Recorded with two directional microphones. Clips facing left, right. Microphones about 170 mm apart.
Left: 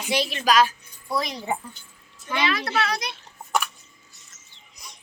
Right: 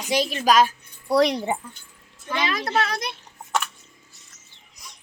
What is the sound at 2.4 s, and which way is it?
Speech, 45° right (ahead or behind).